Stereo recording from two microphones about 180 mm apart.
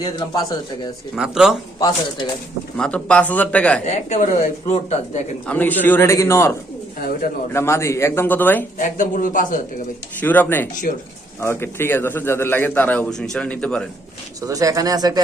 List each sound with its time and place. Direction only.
0.0 s speech: 20° left (ahead or behind)
1.1 s speech: 5° right (ahead or behind)
1.8 s speech: 20° left (ahead or behind)
2.7 s a man's voice: 5° left (ahead or behind)
3.8 s speech: 40° left (ahead or behind)
5.5 s a man's voice: 10° left (ahead or behind)
8.8 s a man's voice: 45° left (ahead or behind)
10.2 s a man's voice: 10° left (ahead or behind)
10.9 s a man's voice: 45° left (ahead or behind)
11.3 s a man's voice: 15° left (ahead or behind)
14.4 s speech: 20° right (ahead or behind)